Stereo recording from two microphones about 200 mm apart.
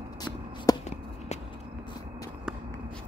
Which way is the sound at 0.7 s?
20° left (ahead or behind).